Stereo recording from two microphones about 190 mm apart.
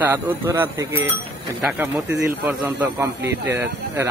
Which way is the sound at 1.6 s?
Centre (ahead or behind).